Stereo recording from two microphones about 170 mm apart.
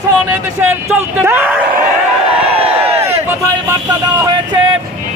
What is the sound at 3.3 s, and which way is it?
Speech, 15° right (ahead or behind).